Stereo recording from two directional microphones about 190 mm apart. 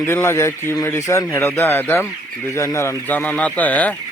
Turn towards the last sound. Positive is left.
turn(degrees=10)  # may be behind; listen again after turning